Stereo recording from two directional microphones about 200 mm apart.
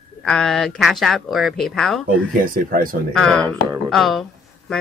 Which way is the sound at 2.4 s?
45° right (ahead or behind).